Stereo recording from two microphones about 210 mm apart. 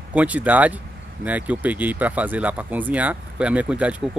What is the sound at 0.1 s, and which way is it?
Speech, 5° right (ahead or behind).